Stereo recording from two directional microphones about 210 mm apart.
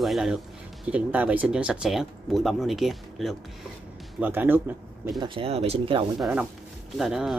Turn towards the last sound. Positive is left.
turn(degrees=0)  # may be behind; listen again after turning